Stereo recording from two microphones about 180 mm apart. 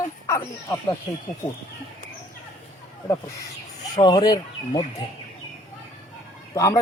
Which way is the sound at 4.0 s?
25° left (ahead or behind).